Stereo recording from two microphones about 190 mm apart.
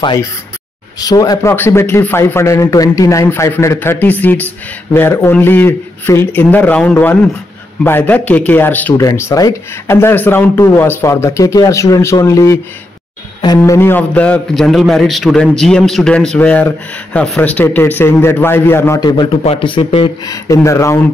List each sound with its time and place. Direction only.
0.0 s a man's voice: 20° left (ahead or behind)
13.6 s a man's voice: 10° left (ahead or behind); by 20.3 s 30° left (ahead or behind)
20.4 s a man's voice: 15° left (ahead or behind)